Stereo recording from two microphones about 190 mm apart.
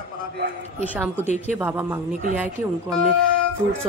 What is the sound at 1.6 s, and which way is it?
Speech, 10° right (ahead or behind).